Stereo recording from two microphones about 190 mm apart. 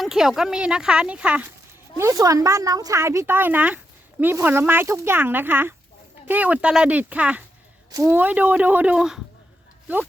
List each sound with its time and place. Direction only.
0.0 s speech: centre (ahead or behind)